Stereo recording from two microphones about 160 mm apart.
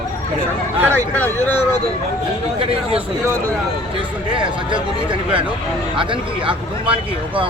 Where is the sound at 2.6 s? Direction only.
35° right (ahead or behind).